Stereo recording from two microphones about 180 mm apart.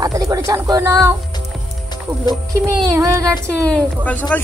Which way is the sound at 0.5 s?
15° right (ahead or behind).